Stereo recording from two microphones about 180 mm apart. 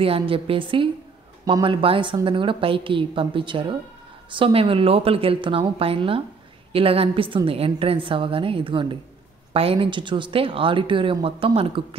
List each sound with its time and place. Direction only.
0.0 s a woman's voice: 30° right (ahead or behind)